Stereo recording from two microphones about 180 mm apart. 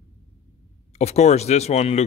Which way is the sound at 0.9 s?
40° left (ahead or behind).